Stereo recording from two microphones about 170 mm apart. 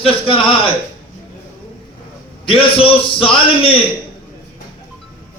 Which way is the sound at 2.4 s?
30° left (ahead or behind).